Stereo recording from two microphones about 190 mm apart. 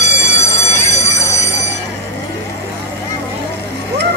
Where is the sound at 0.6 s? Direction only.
15° left (ahead or behind).